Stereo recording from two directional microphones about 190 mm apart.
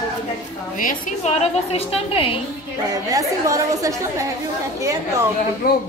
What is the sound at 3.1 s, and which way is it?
Speech, 15° right (ahead or behind).